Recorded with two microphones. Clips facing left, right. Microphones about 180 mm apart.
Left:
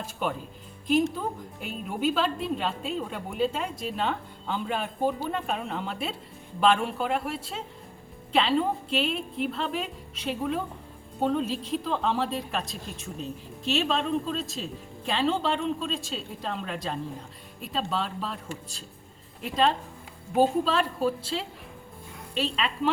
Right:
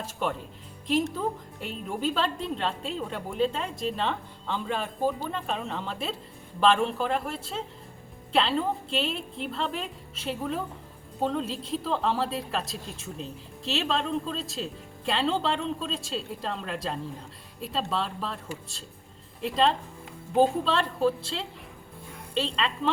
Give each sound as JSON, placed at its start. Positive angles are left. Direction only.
{"t": 0.2, "sound": "a woman's voice", "side_deg": 5}
{"t": 13.7, "sound": "a woman's voice", "side_deg": 0}
{"t": 19.4, "sound": "a woman's voice", "side_deg": 0}